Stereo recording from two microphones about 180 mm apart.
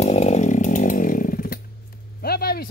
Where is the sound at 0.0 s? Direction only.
40° left (ahead or behind).